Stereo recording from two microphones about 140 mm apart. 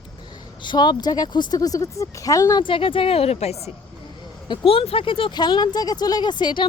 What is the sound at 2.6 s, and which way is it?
A woman's voice, 40° left (ahead or behind).